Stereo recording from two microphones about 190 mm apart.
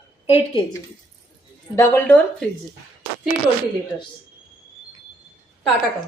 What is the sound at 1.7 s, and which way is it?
Speech, 15° left (ahead or behind).